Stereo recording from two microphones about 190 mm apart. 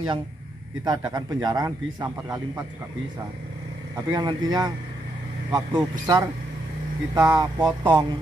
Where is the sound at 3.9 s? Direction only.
20° right (ahead or behind).